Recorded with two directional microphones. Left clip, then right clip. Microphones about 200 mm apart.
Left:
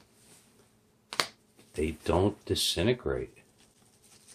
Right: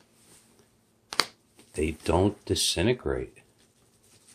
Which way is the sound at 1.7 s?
25° right (ahead or behind).